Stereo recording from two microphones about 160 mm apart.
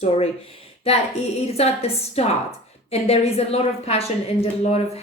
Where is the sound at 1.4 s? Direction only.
40° left (ahead or behind).